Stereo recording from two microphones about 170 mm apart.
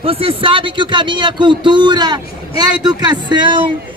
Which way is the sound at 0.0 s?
35° right (ahead or behind).